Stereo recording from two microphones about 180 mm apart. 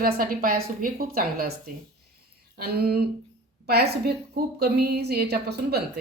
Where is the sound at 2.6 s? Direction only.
60° right (ahead or behind).